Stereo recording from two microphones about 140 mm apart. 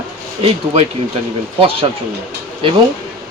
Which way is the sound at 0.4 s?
45° right (ahead or behind).